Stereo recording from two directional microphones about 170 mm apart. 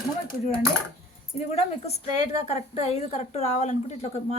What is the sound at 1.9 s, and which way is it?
A woman's voice, 40° left (ahead or behind).